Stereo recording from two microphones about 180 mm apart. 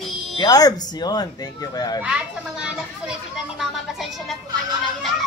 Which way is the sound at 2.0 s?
5° right (ahead or behind).